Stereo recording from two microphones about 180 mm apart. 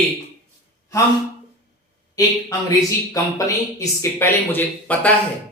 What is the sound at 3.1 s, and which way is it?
Speech, 20° left (ahead or behind).